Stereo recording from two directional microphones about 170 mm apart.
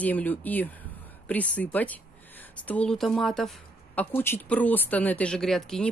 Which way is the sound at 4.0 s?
10° left (ahead or behind).